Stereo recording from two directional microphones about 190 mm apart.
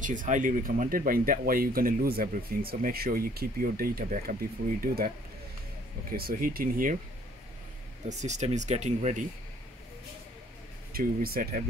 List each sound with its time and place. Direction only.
0.0 s speech: 45° right (ahead or behind)
6.0 s speech: 50° right (ahead or behind)
8.1 s speech: 40° right (ahead or behind)
10.9 s speech: 50° right (ahead or behind)